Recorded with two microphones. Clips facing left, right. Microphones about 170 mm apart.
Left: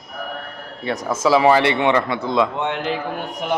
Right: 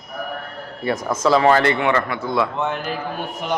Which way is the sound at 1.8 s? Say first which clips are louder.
Left 2 dB; 20° left (ahead or behind).